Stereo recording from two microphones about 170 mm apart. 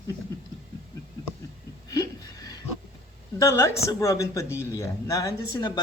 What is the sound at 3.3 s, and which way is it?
Speech, 20° left (ahead or behind).